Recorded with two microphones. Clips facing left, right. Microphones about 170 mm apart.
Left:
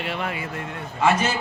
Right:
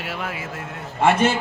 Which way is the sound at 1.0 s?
55° right (ahead or behind).